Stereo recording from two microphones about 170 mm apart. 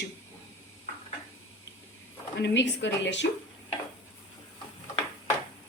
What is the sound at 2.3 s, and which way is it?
Speech, 90° left.